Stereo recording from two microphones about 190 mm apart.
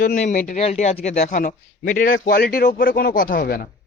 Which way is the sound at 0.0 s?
40° left (ahead or behind).